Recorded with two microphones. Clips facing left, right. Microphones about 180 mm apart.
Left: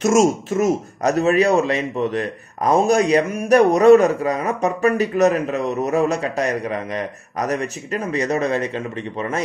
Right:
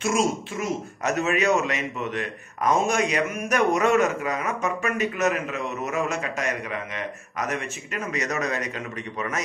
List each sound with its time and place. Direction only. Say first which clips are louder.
0.0 s speech: left 8 dB; 45° left (ahead or behind)